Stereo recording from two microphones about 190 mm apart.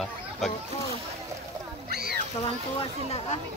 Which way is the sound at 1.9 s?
55° right (ahead or behind).